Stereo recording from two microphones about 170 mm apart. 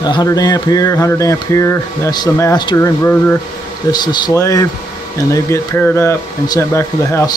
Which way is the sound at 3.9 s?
25° left (ahead or behind).